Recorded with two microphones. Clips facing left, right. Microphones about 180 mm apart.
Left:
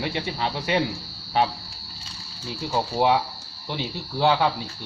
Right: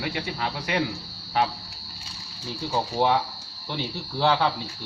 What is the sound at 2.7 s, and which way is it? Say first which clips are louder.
Speech: left 2 dB; 10° left (ahead or behind).